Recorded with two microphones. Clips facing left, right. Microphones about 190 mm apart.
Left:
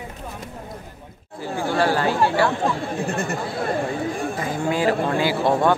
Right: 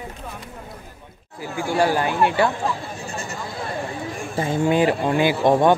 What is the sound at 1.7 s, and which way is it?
Speech, 15° right (ahead or behind).